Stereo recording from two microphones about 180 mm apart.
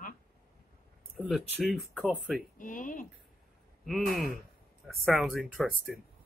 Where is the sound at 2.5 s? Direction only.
45° left (ahead or behind).